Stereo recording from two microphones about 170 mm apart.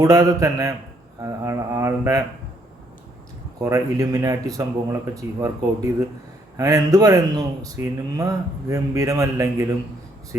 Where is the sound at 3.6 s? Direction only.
20° right (ahead or behind).